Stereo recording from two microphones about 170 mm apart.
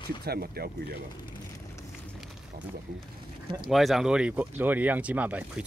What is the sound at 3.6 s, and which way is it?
Speech, centre (ahead or behind).